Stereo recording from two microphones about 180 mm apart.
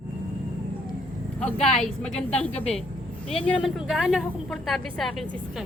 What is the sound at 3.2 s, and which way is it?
Speech, 35° left (ahead or behind).